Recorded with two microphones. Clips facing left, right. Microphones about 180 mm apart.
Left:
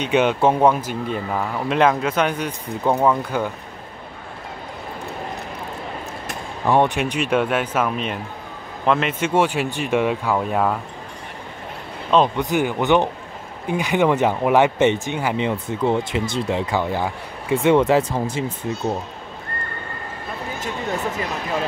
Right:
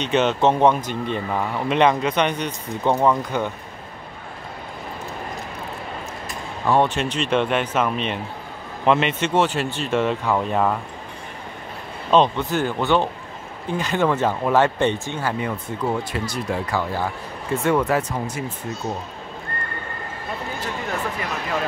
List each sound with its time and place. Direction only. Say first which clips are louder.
0.0 s speech: left 1 dB; 10° left (ahead or behind)
6.6 s speech: left 1 dB; 15° left (ahead or behind)
12.4 s speech: left 2 dB; 15° left (ahead or behind)